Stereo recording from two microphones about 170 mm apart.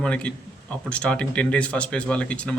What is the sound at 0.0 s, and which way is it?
A man's voice, 5° left (ahead or behind).